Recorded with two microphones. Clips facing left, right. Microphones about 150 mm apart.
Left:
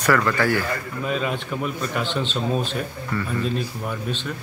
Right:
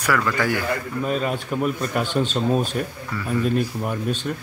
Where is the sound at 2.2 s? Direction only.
45° right (ahead or behind).